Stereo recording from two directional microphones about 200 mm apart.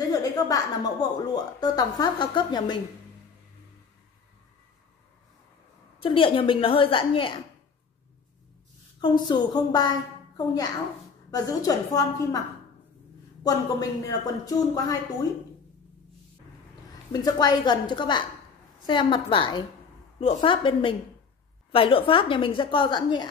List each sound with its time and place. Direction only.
0.0 s a woman's voice: 20° left (ahead or behind)
5.9 s a woman's voice: 25° left (ahead or behind)
9.0 s a woman's voice: 20° left (ahead or behind)
13.4 s a woman's voice: 15° left (ahead or behind)
17.1 s a woman's voice: 20° left (ahead or behind)